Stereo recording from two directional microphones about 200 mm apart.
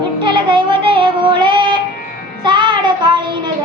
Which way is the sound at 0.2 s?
25° right (ahead or behind).